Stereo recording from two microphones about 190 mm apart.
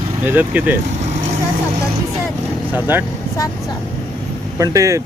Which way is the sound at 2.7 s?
10° right (ahead or behind).